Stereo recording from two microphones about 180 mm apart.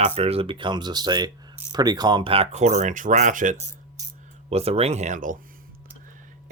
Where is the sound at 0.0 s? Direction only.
35° right (ahead or behind).